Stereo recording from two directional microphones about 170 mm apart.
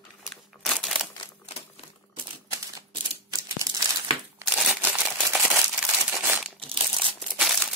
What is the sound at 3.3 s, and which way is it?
Crumpling, 20° right (ahead or behind).